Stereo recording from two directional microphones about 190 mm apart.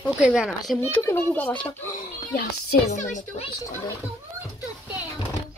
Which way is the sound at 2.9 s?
40° left (ahead or behind).